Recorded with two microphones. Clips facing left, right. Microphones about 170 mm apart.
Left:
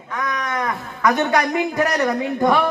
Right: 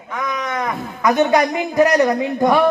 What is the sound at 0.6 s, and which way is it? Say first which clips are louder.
A man's voice: right 2 dB; 15° right (ahead or behind).